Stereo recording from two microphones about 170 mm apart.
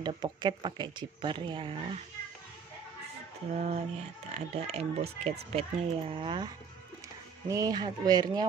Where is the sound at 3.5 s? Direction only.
40° right (ahead or behind).